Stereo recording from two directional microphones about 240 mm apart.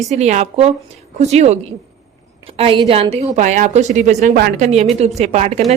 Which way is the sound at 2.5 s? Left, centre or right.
Right.